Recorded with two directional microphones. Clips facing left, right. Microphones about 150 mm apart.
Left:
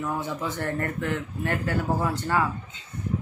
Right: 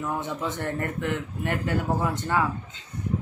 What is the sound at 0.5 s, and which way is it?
Speech, 20° right (ahead or behind).